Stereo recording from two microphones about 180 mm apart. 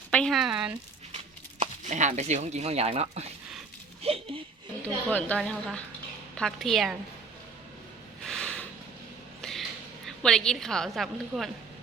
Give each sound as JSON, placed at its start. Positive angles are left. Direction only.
{"t": 0.1, "sound": "a woman's voice", "side_deg": 5}
{"t": 1.1, "sound": "speech", "side_deg": -40}
{"t": 4.0, "sound": "a sound", "side_deg": -30}
{"t": 5.0, "sound": "a woman's voice", "side_deg": 10}
{"t": 8.2, "sound": "snort", "side_deg": 5}
{"t": 9.4, "sound": "a sound", "side_deg": 0}
{"t": 10.1, "sound": "a woman's voice", "side_deg": 5}